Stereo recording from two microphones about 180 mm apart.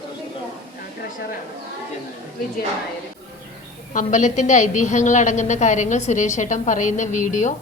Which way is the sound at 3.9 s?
40° left (ahead or behind).